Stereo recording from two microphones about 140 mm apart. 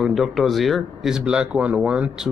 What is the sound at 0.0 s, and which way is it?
Speech, centre (ahead or behind).